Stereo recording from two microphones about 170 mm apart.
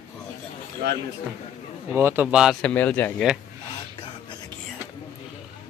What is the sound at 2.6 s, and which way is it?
Speech, 10° left (ahead or behind).